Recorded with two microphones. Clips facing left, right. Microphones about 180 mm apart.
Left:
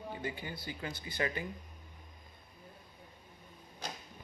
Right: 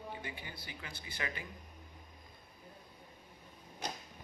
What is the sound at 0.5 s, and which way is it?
Speech, 25° left (ahead or behind).